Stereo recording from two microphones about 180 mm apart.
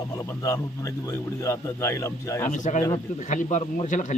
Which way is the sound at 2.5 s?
45° left (ahead or behind).